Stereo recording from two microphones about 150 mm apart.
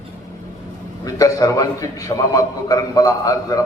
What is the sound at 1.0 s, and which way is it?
A man's voice, 25° left (ahead or behind).